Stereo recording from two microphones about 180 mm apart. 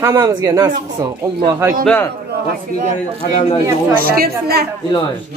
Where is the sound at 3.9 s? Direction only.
55° right (ahead or behind).